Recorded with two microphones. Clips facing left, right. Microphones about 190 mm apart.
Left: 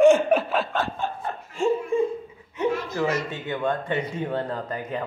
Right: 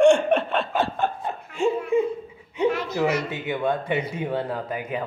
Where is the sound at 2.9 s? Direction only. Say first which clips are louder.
Right 2 dB; 15° right (ahead or behind).